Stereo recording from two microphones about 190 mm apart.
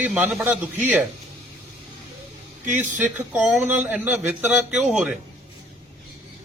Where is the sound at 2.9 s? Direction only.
10° right (ahead or behind).